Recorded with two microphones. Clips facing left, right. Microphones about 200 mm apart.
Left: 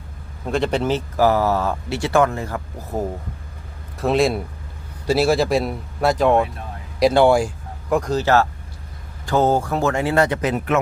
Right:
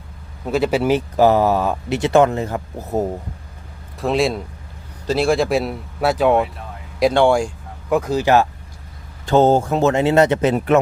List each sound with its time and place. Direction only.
0.4 s speech: 5° right (ahead or behind); by 3.1 s 20° right (ahead or behind)
3.9 s speech: centre (ahead or behind); by 10.8 s 30° right (ahead or behind)